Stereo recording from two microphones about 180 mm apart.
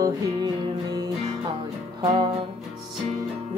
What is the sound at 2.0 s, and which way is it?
Music, 30° right (ahead or behind).